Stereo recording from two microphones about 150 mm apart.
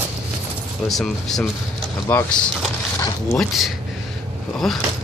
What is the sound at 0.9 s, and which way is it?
Speech, centre (ahead or behind).